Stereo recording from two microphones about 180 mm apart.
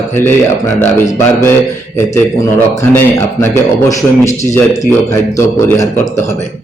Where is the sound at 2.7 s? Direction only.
15° left (ahead or behind).